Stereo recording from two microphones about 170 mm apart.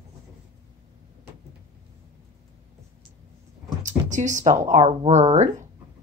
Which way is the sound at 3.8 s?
45° right (ahead or behind).